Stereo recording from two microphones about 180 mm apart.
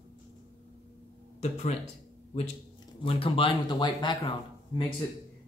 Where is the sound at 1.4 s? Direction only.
40° left (ahead or behind).